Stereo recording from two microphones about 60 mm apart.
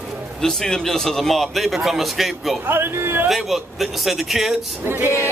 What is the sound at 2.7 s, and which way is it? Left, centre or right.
Speech, right.